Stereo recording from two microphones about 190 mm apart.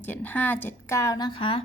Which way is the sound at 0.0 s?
10° left (ahead or behind).